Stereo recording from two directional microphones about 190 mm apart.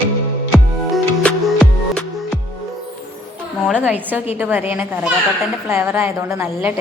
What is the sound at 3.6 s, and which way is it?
A woman's voice, 5° right (ahead or behind).